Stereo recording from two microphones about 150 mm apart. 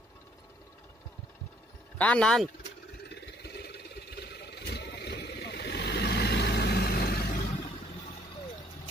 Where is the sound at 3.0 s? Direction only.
90° left; by 7.7 s 65° left (ahead or behind).